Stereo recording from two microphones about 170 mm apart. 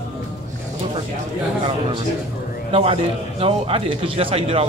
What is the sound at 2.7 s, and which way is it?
A man's voice, 35° right (ahead or behind).